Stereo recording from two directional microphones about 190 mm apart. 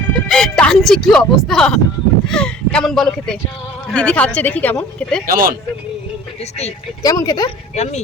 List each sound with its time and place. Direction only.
0.0 s music: 5° left (ahead or behind)
2.2 s a woman's voice: 5° left (ahead or behind)
5.2 s speech: 50° right (ahead or behind)
7.0 s speech: 20° left (ahead or behind)
7.8 s speech: 35° left (ahead or behind)